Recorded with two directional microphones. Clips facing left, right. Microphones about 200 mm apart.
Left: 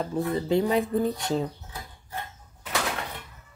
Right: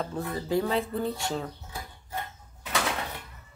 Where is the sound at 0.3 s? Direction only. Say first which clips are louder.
Left 3 dB; 20° left (ahead or behind).